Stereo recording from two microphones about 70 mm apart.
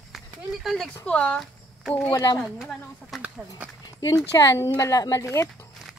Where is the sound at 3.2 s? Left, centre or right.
Right.